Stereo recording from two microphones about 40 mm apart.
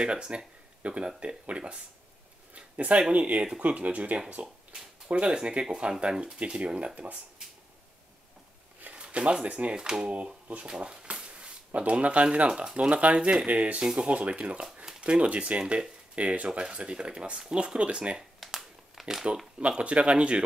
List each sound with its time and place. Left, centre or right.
0.0 s speech: right
2.5 s a sound: right
3.1 s speech: right
3.3 s speech: right
3.6 s speech: right
5.1 s speech: right
6.1 s speech: centre
6.4 s speech: right
9.0 s speech: right
9.8 s speech: centre
10.7 s a sound: right
11.9 s speech: right
18.5 s crumpling: centre
19.6 s speech: right